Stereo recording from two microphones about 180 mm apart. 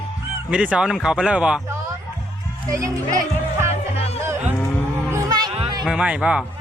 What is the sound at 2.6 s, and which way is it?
Speech, 20° right (ahead or behind).